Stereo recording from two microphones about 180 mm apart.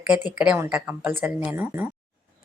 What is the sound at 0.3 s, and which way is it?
A woman's voice, 5° right (ahead or behind).